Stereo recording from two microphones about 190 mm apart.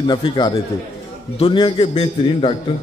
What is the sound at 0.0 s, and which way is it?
A man's voice, 25° left (ahead or behind).